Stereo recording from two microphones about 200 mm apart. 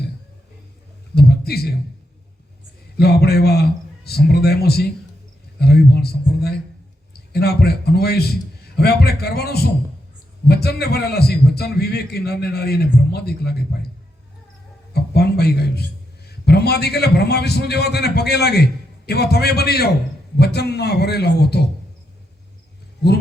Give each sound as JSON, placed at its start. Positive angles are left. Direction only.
{"t": 1.1, "sound": "a sound", "side_deg": 50}
{"t": 3.0, "sound": "a man's voice", "side_deg": 50}
{"t": 14.9, "sound": "a man's voice", "side_deg": 55}